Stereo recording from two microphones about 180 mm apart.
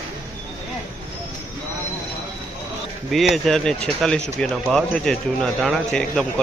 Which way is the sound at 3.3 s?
Centre (ahead or behind).